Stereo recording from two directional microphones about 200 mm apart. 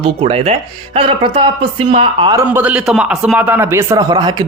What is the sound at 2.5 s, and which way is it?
Speech, 5° right (ahead or behind).